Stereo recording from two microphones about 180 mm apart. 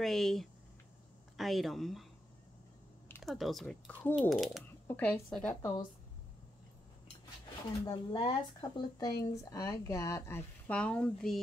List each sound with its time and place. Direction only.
0.0 s speech: centre (ahead or behind)
3.2 s speech: centre (ahead or behind)
4.8 s speech: 10° left (ahead or behind)
7.8 s speech: 30° left (ahead or behind); by 11.3 s 5° left (ahead or behind)